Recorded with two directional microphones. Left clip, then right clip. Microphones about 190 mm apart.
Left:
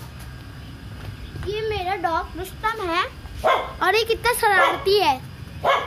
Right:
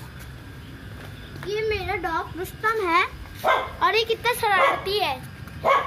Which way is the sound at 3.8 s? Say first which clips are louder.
Left 2 dB; 40° left (ahead or behind).